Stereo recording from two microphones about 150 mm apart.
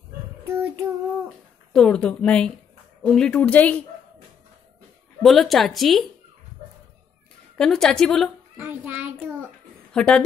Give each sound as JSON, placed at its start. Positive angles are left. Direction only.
{"t": 0.5, "sound": "child singing", "side_deg": -20}
{"t": 1.7, "sound": "a woman's voice", "side_deg": 5}
{"t": 5.2, "sound": "a woman's voice", "side_deg": 0}
{"t": 7.5, "sound": "a woman's voice", "side_deg": 5}
{"t": 8.5, "sound": "child singing", "side_deg": -15}
{"t": 9.9, "sound": "a woman's voice", "side_deg": 5}